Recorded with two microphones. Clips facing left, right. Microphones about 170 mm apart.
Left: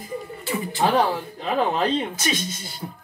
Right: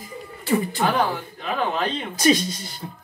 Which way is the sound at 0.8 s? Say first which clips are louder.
Left 2 dB; 30° left (ahead or behind).